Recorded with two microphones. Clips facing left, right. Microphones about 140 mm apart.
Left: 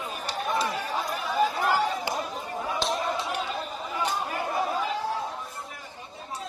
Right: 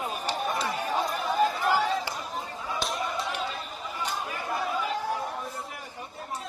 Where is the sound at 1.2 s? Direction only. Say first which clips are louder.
Left 1 dB; centre (ahead or behind).